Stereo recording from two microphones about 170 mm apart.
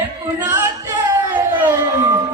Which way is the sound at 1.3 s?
10° right (ahead or behind).